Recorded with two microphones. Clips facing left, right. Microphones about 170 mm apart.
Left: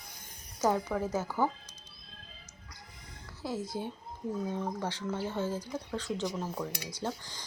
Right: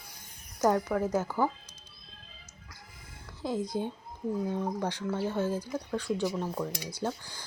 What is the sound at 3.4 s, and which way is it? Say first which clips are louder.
Speech: right 4 dB; 15° right (ahead or behind).